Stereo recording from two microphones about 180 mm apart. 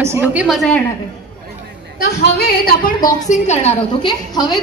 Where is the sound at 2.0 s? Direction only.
60° left (ahead or behind).